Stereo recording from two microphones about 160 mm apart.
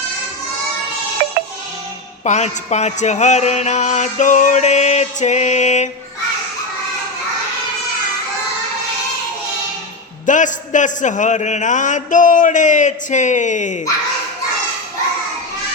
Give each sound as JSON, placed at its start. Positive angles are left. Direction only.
{"t": 2.2, "sound": "music", "side_deg": 45}
{"t": 10.2, "sound": "music", "side_deg": 50}